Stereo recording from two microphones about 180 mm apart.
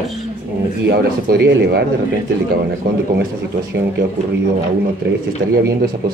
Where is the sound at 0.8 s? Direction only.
60° right (ahead or behind).